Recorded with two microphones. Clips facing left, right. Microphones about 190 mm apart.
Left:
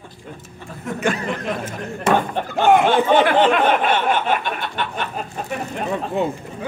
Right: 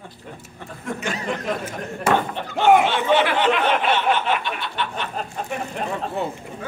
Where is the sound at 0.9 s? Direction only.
55° left (ahead or behind).